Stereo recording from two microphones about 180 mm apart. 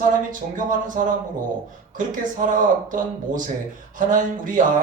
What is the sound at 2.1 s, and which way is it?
Speech, 50° right (ahead or behind).